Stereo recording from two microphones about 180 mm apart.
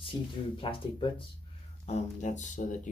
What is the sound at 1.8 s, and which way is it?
Speech, 40° left (ahead or behind).